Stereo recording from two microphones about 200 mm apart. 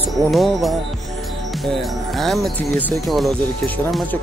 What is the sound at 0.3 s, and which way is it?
Speech, centre (ahead or behind).